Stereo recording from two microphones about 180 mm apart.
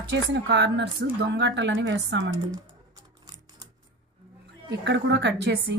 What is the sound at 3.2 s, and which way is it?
Typewriter, 20° right (ahead or behind).